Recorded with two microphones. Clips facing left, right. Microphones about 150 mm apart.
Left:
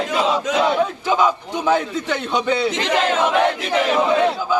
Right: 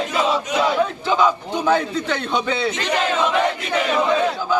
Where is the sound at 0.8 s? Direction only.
10° left (ahead or behind).